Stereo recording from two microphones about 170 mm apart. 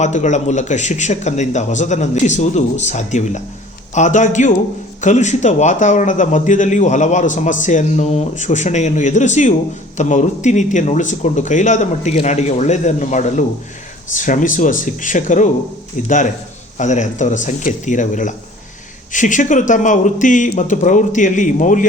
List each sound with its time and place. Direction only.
0.0 s a man's voice: 45° left (ahead or behind)